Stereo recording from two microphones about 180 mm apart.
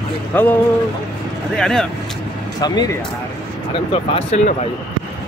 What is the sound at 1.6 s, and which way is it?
Speech, 5° left (ahead or behind).